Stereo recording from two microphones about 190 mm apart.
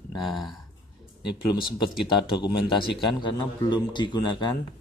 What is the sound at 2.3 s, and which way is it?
Speech, 25° left (ahead or behind).